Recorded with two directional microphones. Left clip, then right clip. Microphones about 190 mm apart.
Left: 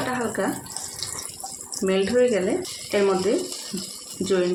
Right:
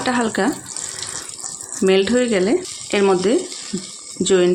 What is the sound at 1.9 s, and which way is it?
Speech, 60° right (ahead or behind).